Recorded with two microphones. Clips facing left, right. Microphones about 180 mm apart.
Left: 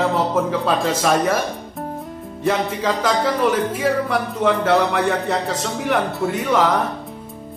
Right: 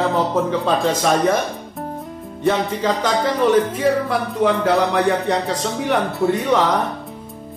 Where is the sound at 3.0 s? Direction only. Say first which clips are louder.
Left 1 dB; 5° left (ahead or behind).